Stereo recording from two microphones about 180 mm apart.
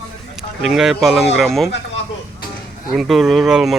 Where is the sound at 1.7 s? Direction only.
75° left (ahead or behind).